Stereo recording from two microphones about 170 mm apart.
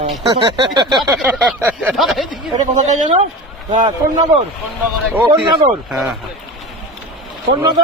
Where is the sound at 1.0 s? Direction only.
5° right (ahead or behind).